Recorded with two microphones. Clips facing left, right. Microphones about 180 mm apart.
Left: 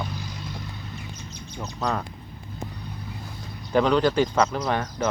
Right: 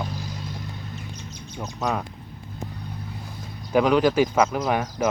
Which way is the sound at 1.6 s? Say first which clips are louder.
Right 1 dB; 5° right (ahead or behind).